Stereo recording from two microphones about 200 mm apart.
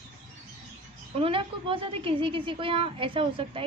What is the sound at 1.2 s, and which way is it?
A woman's voice, 25° right (ahead or behind).